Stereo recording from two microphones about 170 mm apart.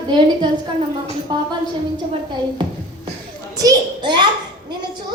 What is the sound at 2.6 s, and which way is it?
A child's voice, 25° right (ahead or behind).